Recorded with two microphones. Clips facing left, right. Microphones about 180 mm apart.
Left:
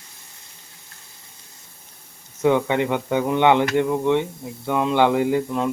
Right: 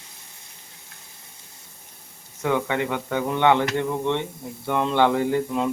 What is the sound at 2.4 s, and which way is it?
Speech, 20° left (ahead or behind).